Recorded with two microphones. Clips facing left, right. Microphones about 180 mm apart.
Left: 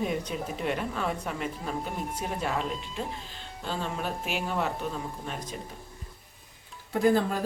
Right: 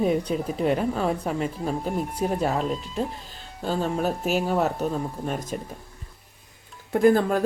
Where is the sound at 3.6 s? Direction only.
45° right (ahead or behind).